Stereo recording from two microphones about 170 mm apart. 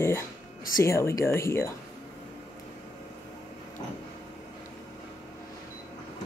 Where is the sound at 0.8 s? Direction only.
15° left (ahead or behind).